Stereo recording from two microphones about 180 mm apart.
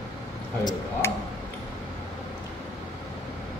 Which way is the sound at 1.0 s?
15° left (ahead or behind).